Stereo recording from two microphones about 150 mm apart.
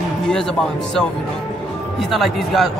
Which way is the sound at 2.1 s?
Centre (ahead or behind).